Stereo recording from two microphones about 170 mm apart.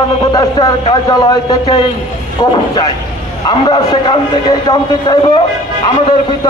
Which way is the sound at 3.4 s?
25° left (ahead or behind).